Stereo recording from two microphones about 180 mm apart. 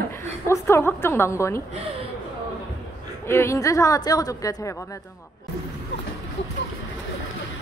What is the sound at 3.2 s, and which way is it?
A woman's voice, 15° left (ahead or behind).